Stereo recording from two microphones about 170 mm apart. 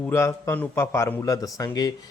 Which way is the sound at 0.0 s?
15° left (ahead or behind).